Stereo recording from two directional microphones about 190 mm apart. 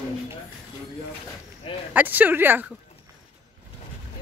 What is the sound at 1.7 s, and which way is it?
Speech, 30° left (ahead or behind).